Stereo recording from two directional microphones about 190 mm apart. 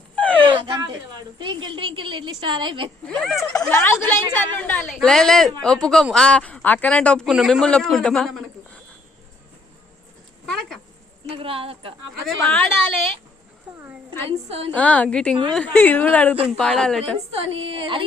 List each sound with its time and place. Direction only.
0.2 s wail: 5° left (ahead or behind)
0.4 s a sound: 25° right (ahead or behind)
1.4 s a woman's voice: 25° right (ahead or behind)
3.1 s speech: centre (ahead or behind)
3.7 s a woman's voice: 15° left (ahead or behind)
10.4 s a sound: centre (ahead or behind)
11.3 s a woman's voice: 30° right (ahead or behind)
12.2 s a woman's voice: 5° left (ahead or behind)
13.7 s a sound: 5° right (ahead or behind)
14.3 s a woman's voice: 35° right (ahead or behind)
14.7 s a woman's voice: 10° left (ahead or behind)
17.6 s a woman's voice: 30° right (ahead or behind)